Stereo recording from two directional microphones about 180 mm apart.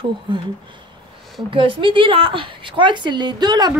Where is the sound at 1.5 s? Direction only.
30° right (ahead or behind).